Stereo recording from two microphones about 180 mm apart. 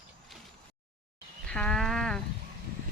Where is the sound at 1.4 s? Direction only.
5° left (ahead or behind).